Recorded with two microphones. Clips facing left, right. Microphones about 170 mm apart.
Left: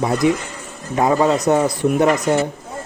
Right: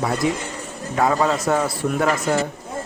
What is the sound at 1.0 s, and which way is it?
Speech, 20° left (ahead or behind).